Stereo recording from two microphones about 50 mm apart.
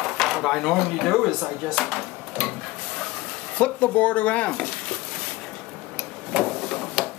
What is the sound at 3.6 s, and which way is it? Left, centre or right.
Speech, left.